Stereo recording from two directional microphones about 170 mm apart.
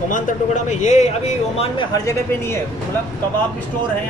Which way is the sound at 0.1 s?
45° left (ahead or behind).